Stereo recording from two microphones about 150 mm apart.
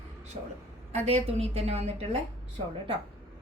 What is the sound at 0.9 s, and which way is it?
A woman's voice, 45° right (ahead or behind).